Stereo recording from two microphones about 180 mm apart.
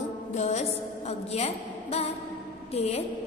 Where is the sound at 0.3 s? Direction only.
40° left (ahead or behind).